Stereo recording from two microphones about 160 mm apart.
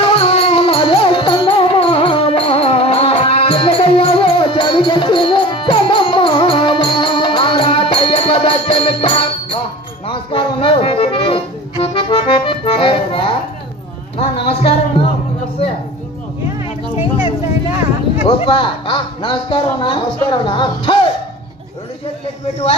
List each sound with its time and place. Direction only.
0.0 s music: 35° left (ahead or behind)
11.8 s accordion: 35° left (ahead or behind)
14.2 s music: 35° left (ahead or behind)
18.3 s speech: 35° left (ahead or behind)